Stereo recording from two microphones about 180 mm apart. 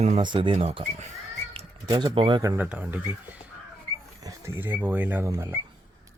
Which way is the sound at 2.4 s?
15° right (ahead or behind).